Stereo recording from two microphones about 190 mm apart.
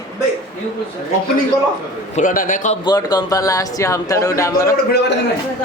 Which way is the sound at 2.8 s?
20° left (ahead or behind).